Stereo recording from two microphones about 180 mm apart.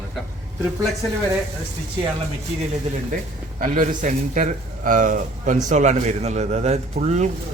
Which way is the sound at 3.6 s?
45° right (ahead or behind).